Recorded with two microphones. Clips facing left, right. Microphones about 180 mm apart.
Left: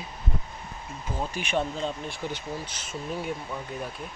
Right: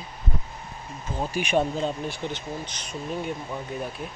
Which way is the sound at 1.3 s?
15° right (ahead or behind).